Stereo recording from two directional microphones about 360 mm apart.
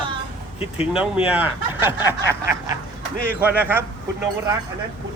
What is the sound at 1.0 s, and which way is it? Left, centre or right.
Speech, centre.